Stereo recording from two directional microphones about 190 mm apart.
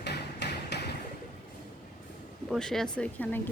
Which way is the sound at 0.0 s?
60° left (ahead or behind).